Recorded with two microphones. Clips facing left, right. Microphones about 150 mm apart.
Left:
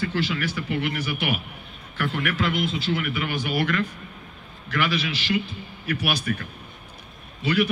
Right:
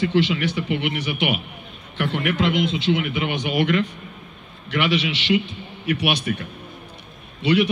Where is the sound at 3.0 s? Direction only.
25° right (ahead or behind).